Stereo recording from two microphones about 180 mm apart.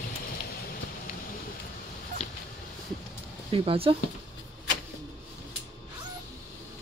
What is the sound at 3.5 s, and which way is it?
Speech, 30° right (ahead or behind).